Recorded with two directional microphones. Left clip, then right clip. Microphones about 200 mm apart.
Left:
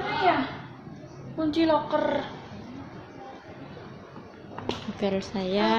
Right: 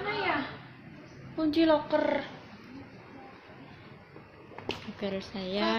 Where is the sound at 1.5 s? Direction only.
50° right (ahead or behind).